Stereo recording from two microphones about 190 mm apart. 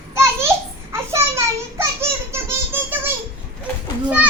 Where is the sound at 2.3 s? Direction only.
10° right (ahead or behind).